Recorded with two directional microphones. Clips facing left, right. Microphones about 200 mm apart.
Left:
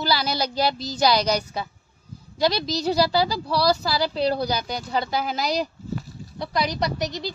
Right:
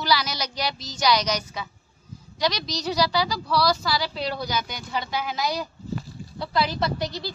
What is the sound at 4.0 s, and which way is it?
A child's voice, 35° left (ahead or behind).